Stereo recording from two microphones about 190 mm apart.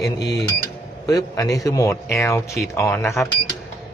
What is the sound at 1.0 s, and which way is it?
Speech, 20° left (ahead or behind).